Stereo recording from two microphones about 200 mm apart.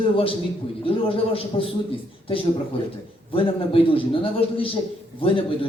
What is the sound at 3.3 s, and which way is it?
A man's voice, 25° left (ahead or behind).